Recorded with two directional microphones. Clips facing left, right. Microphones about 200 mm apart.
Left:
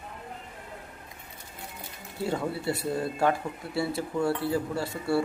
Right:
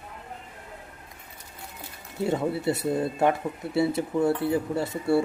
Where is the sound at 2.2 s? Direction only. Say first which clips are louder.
Right 4 dB; 20° right (ahead or behind).